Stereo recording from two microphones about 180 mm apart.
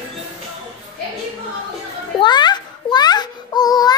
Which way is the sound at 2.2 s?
25° left (ahead or behind).